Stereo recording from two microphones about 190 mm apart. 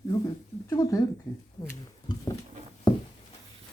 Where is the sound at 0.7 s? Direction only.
20° left (ahead or behind).